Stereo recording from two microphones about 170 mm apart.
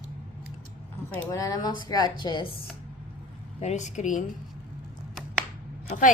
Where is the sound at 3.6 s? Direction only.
45° left (ahead or behind).